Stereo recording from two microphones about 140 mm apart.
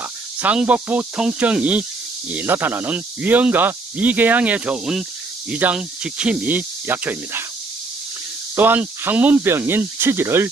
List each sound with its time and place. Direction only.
0.4 s speech: 10° right (ahead or behind)
8.5 s speech: 15° right (ahead or behind)